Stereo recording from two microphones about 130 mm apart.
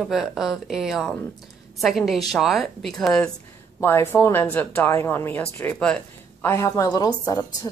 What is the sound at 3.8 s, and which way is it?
Speech, 20° left (ahead or behind).